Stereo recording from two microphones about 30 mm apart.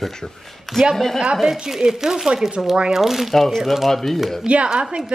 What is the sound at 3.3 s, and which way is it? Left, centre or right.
Speech, centre.